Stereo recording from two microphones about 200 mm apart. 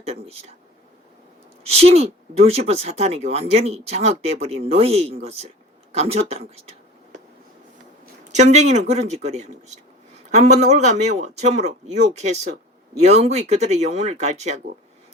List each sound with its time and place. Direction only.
0.0 s speech: 30° right (ahead or behind)
1.6 s speech: 30° right (ahead or behind)
5.9 s a sound: 30° right (ahead or behind)
8.0 s speech: 35° right (ahead or behind)